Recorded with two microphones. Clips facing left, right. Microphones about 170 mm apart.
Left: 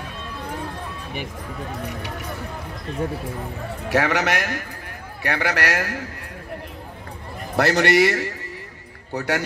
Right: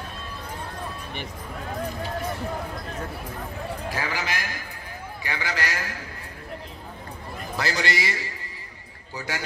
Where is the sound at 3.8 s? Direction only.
75° left (ahead or behind).